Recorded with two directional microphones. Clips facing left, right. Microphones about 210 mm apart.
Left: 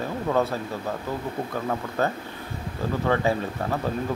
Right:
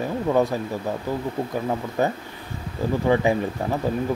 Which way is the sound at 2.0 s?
15° right (ahead or behind).